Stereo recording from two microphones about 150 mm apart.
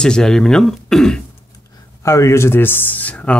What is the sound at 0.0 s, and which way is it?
Speech, 5° left (ahead or behind).